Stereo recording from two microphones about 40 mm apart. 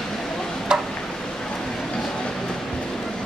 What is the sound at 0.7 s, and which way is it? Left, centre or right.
Tick-tock, centre.